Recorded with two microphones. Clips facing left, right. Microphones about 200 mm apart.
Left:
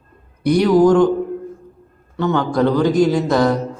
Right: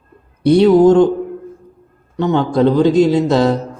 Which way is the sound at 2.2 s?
20° right (ahead or behind).